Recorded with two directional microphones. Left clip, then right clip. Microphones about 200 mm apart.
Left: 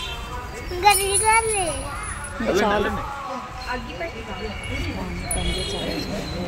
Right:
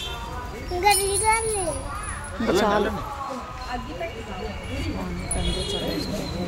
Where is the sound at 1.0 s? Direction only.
10° right (ahead or behind).